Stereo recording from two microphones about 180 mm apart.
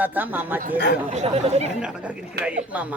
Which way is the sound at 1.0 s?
35° right (ahead or behind).